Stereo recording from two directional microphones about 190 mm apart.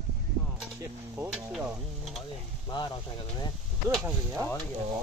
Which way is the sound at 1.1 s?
10° right (ahead or behind).